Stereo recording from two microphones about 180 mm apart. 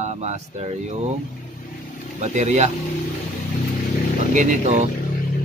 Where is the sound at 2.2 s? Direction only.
40° right (ahead or behind).